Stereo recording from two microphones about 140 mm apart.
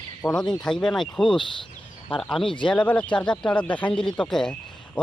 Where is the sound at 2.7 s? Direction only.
10° left (ahead or behind).